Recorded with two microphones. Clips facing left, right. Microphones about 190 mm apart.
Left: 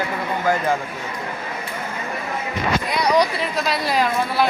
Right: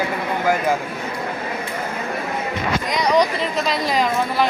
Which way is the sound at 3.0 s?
10° left (ahead or behind).